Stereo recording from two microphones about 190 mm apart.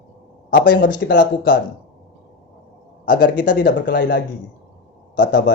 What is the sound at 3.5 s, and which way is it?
Speech, 65° left (ahead or behind).